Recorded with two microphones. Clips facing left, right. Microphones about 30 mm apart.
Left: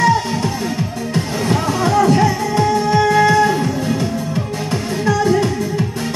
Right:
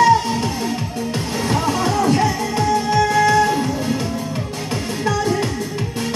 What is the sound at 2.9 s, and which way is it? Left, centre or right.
Music, left.